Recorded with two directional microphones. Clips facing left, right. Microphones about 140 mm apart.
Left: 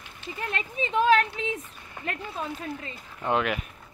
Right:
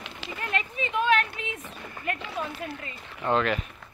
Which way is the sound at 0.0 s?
90° right.